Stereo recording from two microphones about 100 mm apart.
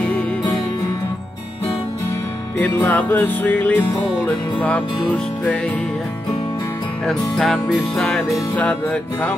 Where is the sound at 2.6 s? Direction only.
15° left (ahead or behind).